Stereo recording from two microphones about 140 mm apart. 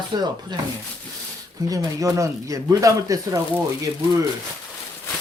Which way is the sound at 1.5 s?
25° right (ahead or behind).